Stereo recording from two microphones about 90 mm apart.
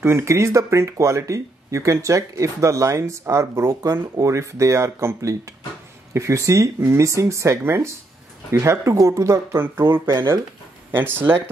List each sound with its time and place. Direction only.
0.0 s speech: 30° right (ahead or behind)